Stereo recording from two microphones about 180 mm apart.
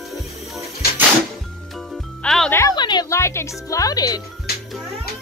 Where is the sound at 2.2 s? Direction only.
Centre (ahead or behind).